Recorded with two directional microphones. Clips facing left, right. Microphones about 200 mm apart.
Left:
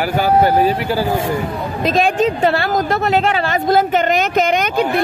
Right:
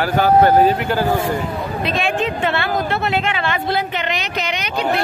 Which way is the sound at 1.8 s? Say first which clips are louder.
Left 6 dB; 40° left (ahead or behind).